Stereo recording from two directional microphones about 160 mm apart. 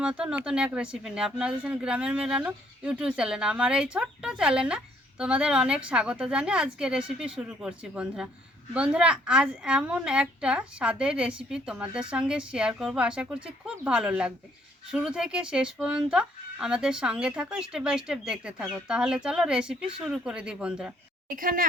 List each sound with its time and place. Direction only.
0.0 s speech: 5° right (ahead or behind)
21.2 s a woman's voice: 60° right (ahead or behind)